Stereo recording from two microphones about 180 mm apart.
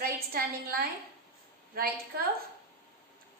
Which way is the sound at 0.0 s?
55° right (ahead or behind).